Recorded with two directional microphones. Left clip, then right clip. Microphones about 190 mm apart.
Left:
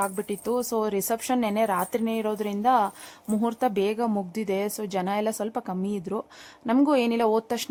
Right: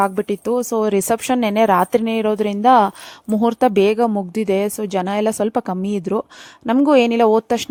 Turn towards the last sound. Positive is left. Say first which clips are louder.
# right 9 dB
turn(degrees=-30)  # may be behind; listen again after turning